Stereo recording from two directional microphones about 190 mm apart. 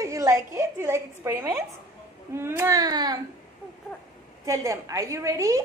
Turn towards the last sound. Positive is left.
turn(degrees=-15)  # may be behind; listen again after turning